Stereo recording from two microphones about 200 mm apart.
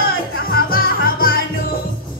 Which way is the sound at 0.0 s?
50° left (ahead or behind).